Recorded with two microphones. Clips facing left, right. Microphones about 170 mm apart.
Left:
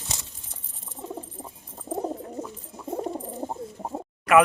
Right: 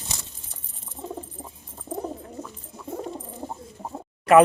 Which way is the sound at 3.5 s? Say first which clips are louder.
Left 3 dB; 25° left (ahead or behind).